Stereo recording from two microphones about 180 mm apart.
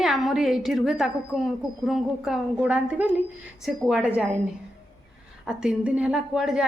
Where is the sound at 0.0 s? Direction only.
Centre (ahead or behind).